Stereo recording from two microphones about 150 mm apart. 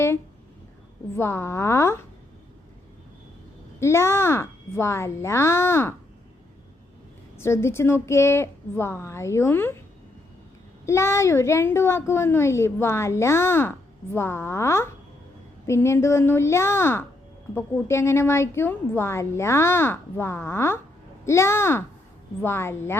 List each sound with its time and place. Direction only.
1.1 s a child's voice: 15° left (ahead or behind)
3.8 s a child's voice: 20° left (ahead or behind)
7.3 s a child's voice: 15° left (ahead or behind)
10.8 s a child's voice: 20° left (ahead or behind)